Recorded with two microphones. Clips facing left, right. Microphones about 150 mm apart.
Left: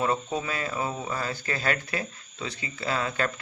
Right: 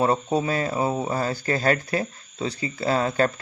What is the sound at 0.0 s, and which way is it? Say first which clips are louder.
Speech: right 6 dB; 35° right (ahead or behind).